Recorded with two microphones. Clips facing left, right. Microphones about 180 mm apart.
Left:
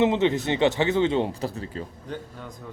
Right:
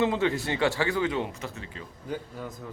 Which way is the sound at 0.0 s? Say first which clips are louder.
Left 4 dB; 20° left (ahead or behind).